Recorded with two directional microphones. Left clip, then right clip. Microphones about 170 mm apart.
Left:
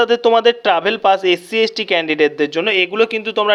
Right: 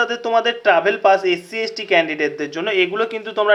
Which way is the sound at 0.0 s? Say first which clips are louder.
Left 6 dB; 50° left (ahead or behind).